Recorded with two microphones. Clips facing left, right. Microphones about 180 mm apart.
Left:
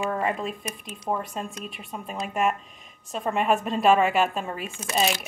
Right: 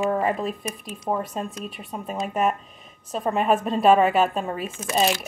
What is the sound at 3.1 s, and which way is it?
A woman's voice, centre (ahead or behind).